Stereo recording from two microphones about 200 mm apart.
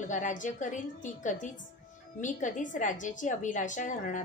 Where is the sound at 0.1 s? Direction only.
40° left (ahead or behind).